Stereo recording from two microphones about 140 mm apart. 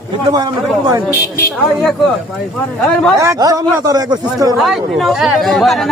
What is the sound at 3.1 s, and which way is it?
A man's voice, 25° right (ahead or behind).